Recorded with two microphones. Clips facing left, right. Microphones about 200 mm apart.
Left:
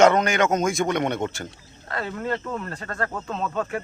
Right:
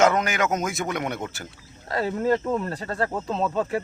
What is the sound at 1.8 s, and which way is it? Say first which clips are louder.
Speech: right 5 dB; 35° right (ahead or behind).